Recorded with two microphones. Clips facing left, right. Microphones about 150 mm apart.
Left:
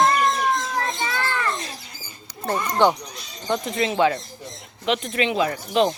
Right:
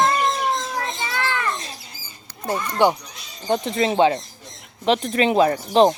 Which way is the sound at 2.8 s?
10° right (ahead or behind).